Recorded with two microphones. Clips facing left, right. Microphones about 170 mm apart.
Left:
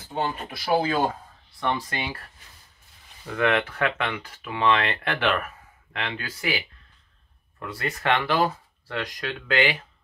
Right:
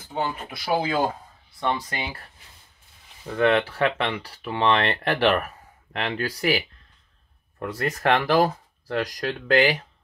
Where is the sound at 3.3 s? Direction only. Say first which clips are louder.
Right 3 dB; 30° right (ahead or behind).